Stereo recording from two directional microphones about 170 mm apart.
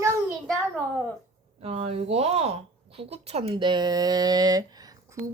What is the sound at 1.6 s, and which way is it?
Speech, 35° right (ahead or behind).